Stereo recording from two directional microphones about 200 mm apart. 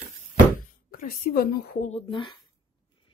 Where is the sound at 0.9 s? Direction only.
45° left (ahead or behind).